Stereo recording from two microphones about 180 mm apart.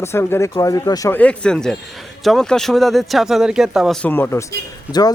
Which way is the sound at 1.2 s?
5° left (ahead or behind).